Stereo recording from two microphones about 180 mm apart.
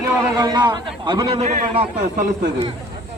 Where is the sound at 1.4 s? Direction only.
40° right (ahead or behind).